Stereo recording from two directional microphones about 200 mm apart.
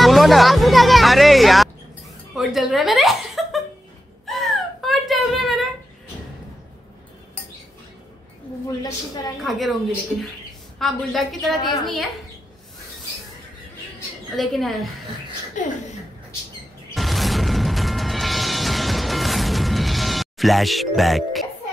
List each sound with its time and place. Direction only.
0.0 s a woman's voice: centre (ahead or behind)
4.3 s whimper: centre (ahead or behind)
9.4 s a woman's voice: centre (ahead or behind)
10.8 s a woman's voice: centre (ahead or behind)
14.3 s a woman's voice: centre (ahead or behind)
15.6 s speech: 40° left (ahead or behind)
16.9 s music: centre (ahead or behind)